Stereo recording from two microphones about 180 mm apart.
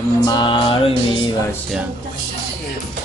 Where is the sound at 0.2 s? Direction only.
25° left (ahead or behind).